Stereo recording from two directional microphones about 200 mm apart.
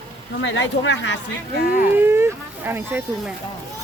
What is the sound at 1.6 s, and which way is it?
Speech, 50° left (ahead or behind).